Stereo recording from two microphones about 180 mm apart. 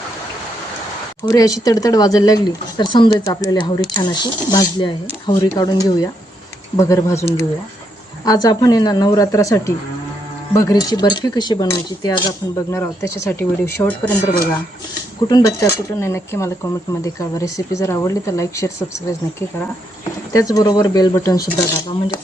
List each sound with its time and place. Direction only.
1.2 s speech: 20° left (ahead or behind)
15.3 s speech: 20° left (ahead or behind)